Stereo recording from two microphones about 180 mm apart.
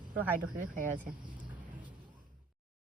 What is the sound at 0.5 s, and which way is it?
Speech, 45° right (ahead or behind).